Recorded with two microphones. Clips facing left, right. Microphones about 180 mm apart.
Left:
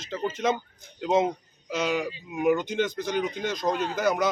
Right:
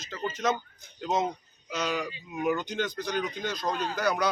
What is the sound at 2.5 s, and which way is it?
Speech, 20° left (ahead or behind).